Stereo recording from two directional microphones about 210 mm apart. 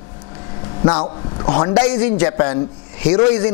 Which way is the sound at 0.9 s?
25° left (ahead or behind).